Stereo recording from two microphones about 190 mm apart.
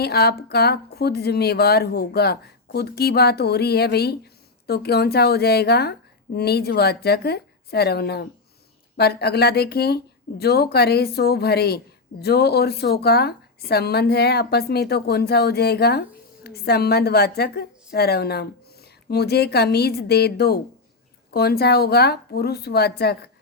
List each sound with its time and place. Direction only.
0.0 s speech: 55° left (ahead or behind)